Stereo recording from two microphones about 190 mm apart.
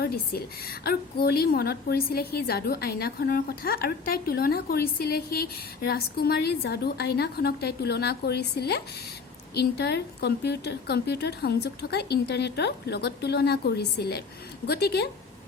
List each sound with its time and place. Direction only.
0.0 s a woman's voice: 55° left (ahead or behind)